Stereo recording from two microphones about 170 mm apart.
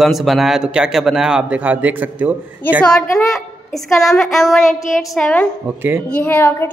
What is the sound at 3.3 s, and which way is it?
A man's voice, centre (ahead or behind).